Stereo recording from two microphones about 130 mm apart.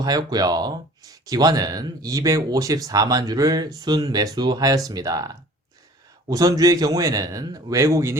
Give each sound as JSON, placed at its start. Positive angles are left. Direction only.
{"t": 0.0, "sound": "speech", "side_deg": -30}